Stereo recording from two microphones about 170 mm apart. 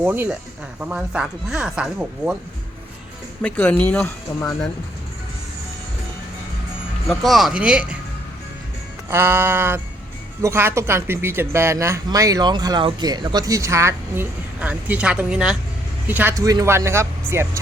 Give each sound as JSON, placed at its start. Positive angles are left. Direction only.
{"t": 0.0, "sound": "speech", "side_deg": -10}
{"t": 3.4, "sound": "speech", "side_deg": 10}
{"t": 7.1, "sound": "speech", "side_deg": 0}
{"t": 9.0, "sound": "speech", "side_deg": -15}
{"t": 16.4, "sound": "speech", "side_deg": -20}